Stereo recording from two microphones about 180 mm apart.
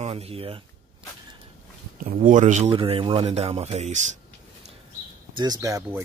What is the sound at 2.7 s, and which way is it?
Speech, 30° right (ahead or behind).